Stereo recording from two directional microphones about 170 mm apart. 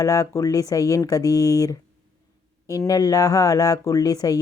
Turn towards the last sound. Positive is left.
turn(degrees=20)  # may be behind; listen again after turning